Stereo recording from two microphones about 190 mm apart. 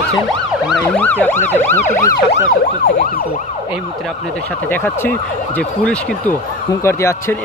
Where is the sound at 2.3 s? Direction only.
55° left (ahead or behind).